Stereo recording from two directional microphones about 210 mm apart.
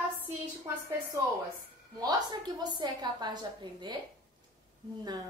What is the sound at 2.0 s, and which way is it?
A woman's voice, 20° right (ahead or behind).